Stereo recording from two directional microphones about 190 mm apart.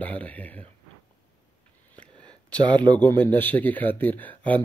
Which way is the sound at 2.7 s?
10° left (ahead or behind).